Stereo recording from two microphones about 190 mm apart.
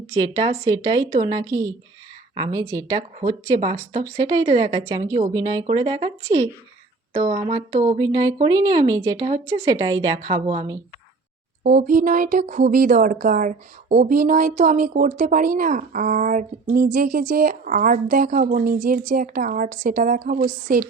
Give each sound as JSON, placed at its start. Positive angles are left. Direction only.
{"t": 0.2, "sound": "speech", "side_deg": -25}
{"t": 7.1, "sound": "speech", "side_deg": -35}
{"t": 7.9, "sound": "speech", "side_deg": -20}
{"t": 11.6, "sound": "speech", "side_deg": -45}